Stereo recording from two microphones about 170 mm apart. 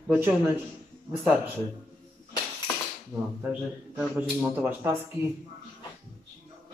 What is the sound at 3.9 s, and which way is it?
Speech, 15° right (ahead or behind).